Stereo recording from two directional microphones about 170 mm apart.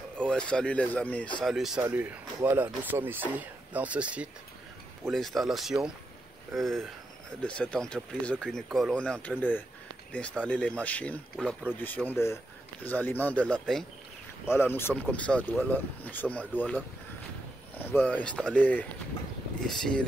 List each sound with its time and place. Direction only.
0.3 s speech: 5° left (ahead or behind)
1.9 s speech: 15° right (ahead or behind); by 9.3 s 5° left (ahead or behind)
10.4 s speech: 5° left (ahead or behind)